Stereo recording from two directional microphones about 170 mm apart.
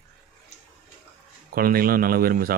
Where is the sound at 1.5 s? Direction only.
60° right (ahead or behind).